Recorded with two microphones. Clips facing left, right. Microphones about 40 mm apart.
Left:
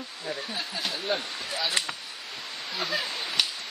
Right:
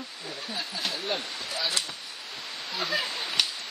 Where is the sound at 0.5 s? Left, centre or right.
Centre.